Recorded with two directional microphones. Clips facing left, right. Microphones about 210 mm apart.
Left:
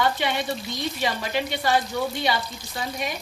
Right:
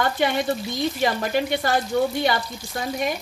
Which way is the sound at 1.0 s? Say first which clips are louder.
Right 3 dB; 50° right (ahead or behind).